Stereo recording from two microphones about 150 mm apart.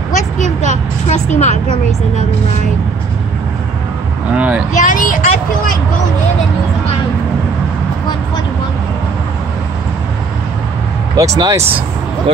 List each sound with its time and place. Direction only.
0.1 s vehicle: 55° left (ahead or behind)
4.4 s speech: 10° right (ahead or behind)
4.7 s speech: 60° left (ahead or behind)
11.1 s speech: 20° right (ahead or behind)